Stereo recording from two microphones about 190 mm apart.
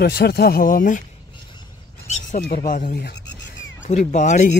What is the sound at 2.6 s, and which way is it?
A man's voice, 45° left (ahead or behind).